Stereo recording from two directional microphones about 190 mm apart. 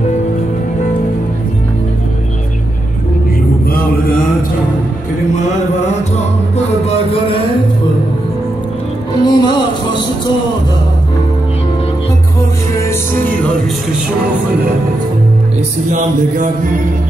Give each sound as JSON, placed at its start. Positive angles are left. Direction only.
{"t": 3.7, "sound": "mantra", "side_deg": 50}
{"t": 6.9, "sound": "music", "side_deg": 30}
{"t": 9.2, "sound": "music", "side_deg": 20}
{"t": 15.9, "sound": "music", "side_deg": -45}